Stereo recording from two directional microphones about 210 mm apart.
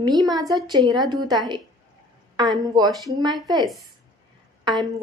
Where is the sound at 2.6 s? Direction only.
20° right (ahead or behind).